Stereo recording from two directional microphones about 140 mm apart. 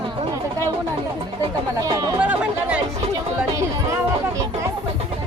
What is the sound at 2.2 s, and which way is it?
Chatter, 10° right (ahead or behind).